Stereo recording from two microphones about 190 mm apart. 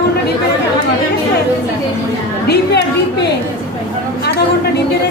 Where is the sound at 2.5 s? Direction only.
60° left (ahead or behind).